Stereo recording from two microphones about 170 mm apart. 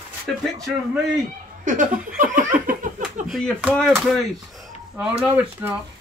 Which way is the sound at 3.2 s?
Centre (ahead or behind).